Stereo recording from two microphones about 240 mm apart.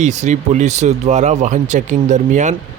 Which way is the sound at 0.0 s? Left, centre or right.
Right.